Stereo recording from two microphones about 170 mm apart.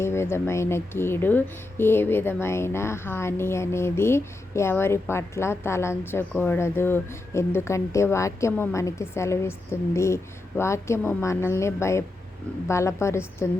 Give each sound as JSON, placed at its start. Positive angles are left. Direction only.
{"t": 0.0, "sound": "speech", "side_deg": 15}